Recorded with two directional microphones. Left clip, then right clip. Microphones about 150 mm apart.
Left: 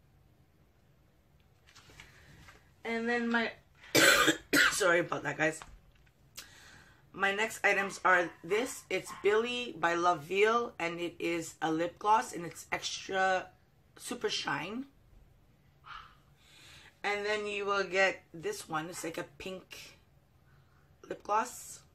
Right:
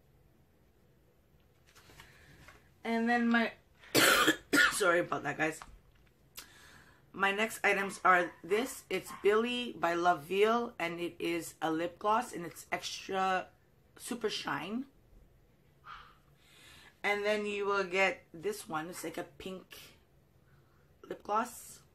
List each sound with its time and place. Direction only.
2.8 s speech: 15° right (ahead or behind)
3.9 s cough: 5° right (ahead or behind)
7.1 s speech: 10° right (ahead or behind)
16.5 s speech: 5° right (ahead or behind)
21.0 s speech: centre (ahead or behind)